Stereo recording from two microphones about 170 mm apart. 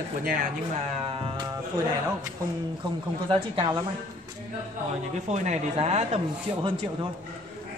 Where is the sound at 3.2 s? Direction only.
35° right (ahead or behind).